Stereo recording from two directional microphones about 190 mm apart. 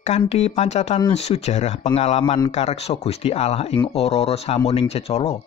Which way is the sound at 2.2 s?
25° left (ahead or behind).